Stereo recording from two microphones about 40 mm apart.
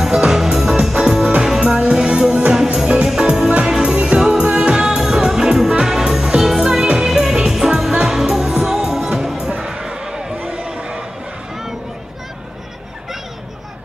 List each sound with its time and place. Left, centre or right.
0.0 s music: centre
4.2 s music: centre
4.8 s music: centre
9.6 s a sound: centre